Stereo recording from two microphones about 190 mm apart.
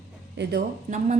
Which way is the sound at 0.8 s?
40° right (ahead or behind).